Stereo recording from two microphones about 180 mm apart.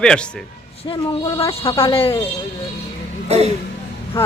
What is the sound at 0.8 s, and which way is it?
Speech, 30° left (ahead or behind).